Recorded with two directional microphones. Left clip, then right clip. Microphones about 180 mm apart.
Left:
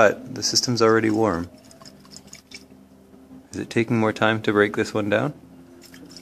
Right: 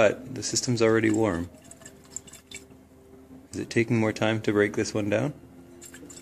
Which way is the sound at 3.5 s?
5° left (ahead or behind).